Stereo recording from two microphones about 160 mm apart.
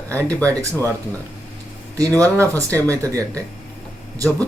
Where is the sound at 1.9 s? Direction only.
20° right (ahead or behind).